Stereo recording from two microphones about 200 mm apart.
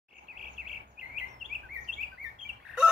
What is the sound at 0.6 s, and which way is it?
Bird vocalization, 50° right (ahead or behind).